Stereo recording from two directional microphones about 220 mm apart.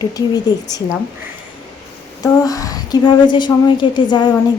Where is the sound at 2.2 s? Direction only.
15° left (ahead or behind).